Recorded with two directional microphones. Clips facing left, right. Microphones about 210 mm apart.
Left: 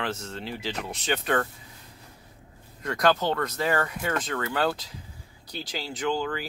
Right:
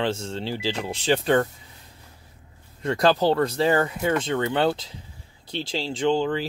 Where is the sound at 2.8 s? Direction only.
30° right (ahead or behind).